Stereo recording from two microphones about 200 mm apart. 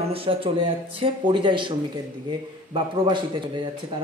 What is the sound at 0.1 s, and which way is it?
A man's voice, 30° right (ahead or behind).